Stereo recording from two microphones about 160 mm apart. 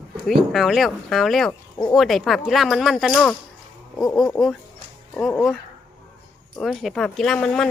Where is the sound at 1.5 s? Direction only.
20° left (ahead or behind).